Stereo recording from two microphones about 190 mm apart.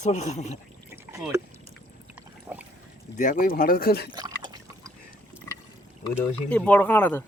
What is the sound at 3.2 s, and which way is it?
Speech, 45° left (ahead or behind).